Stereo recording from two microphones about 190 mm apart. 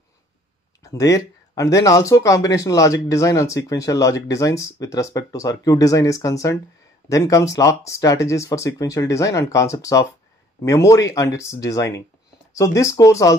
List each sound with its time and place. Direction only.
0.8 s speech: 15° left (ahead or behind)